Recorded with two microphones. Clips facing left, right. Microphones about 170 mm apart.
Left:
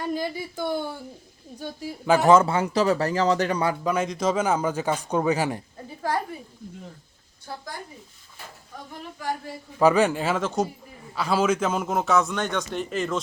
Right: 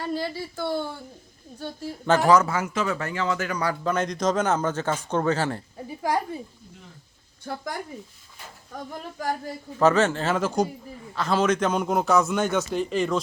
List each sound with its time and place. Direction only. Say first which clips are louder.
0.0 s speech: left 1 dB; 15° left (ahead or behind)
2.2 s speech: left 3 dB; 25° left (ahead or behind)
3.7 s speech: left 1 dB; 10° left (ahead or behind)
9.7 s speech: left 1 dB; 10° left (ahead or behind)
10.3 s a man's voice: right 1 dB; centre (ahead or behind)